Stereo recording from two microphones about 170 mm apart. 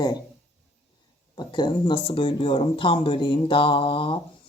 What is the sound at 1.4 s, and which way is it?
A man's voice, 25° left (ahead or behind).